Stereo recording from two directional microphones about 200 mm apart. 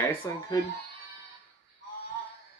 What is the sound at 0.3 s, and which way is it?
Speech, 20° left (ahead or behind).